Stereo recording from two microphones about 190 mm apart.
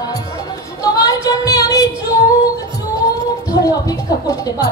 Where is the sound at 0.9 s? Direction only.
20° left (ahead or behind).